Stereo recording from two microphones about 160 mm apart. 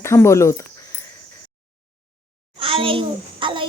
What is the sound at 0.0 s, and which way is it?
Speech, 15° left (ahead or behind).